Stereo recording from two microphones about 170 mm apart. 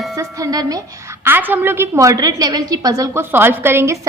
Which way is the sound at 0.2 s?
20° right (ahead or behind).